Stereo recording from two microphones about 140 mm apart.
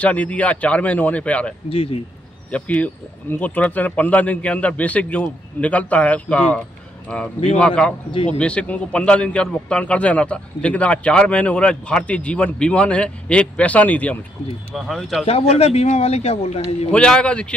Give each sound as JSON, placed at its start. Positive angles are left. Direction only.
{"t": 0.0, "sound": "a man's voice", "side_deg": 10}
{"t": 1.7, "sound": "a man's voice", "side_deg": 40}
{"t": 2.5, "sound": "a man's voice", "side_deg": 10}
{"t": 15.2, "sound": "a man's voice", "side_deg": 45}
{"t": 16.9, "sound": "a man's voice", "side_deg": 5}